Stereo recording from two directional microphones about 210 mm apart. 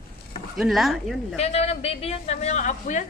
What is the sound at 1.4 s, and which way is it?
A woman's voice, 30° left (ahead or behind).